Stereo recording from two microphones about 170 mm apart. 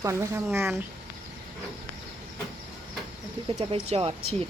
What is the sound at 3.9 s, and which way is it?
Speech, 35° right (ahead or behind).